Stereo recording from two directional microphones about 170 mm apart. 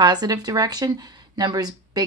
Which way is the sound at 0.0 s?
25° right (ahead or behind).